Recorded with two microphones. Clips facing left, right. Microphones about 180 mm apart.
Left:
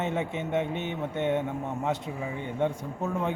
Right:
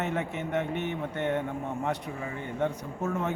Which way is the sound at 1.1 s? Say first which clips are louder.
Left 3 dB; 10° left (ahead or behind).